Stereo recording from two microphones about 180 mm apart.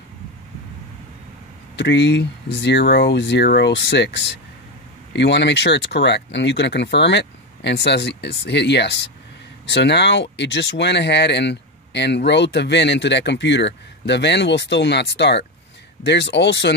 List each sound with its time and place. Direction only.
1.8 s speech: 75° left (ahead or behind)